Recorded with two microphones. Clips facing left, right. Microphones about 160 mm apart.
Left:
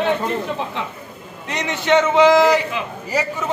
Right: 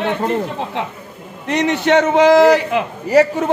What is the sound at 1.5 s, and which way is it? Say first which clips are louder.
A man's voice: right 4 dB; 60° right (ahead or behind).